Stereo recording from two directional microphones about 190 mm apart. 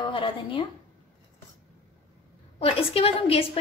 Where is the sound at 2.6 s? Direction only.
30° left (ahead or behind).